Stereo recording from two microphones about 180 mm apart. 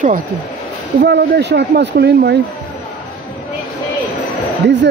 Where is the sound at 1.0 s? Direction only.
65° right (ahead or behind).